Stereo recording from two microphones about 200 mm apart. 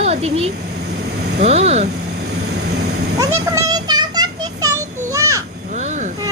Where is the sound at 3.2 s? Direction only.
15° right (ahead or behind).